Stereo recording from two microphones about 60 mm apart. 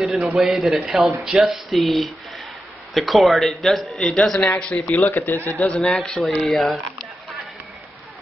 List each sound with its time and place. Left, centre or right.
0.0 s a man's voice: centre
4.4 s a man's voice: left
4.6 s speech: centre
4.9 s a man's voice: left
5.7 s a man's voice: centre